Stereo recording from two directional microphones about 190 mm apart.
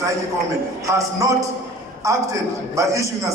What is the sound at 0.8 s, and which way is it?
A man's voice, 15° right (ahead or behind).